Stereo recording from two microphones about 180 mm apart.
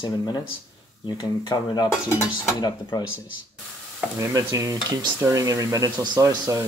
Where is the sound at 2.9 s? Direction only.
20° left (ahead or behind).